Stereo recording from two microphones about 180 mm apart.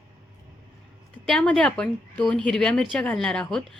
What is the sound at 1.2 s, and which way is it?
A woman's voice, 5° left (ahead or behind).